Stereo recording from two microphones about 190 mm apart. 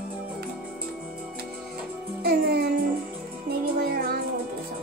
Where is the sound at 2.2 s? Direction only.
55° right (ahead or behind).